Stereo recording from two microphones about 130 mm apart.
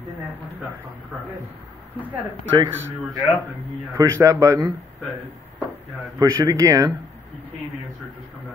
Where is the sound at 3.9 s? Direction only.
25° right (ahead or behind).